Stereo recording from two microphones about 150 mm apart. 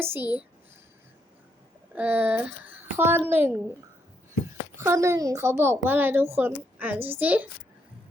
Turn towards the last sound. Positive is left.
turn(degrees=-10)  # may be behind; listen again after turning